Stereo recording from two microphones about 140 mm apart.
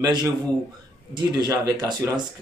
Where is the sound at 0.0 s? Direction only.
30° right (ahead or behind).